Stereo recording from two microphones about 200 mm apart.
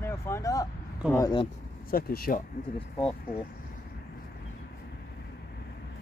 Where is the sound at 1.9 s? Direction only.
50° left (ahead or behind).